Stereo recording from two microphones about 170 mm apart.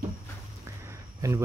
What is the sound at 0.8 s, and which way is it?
Cricket, 15° right (ahead or behind).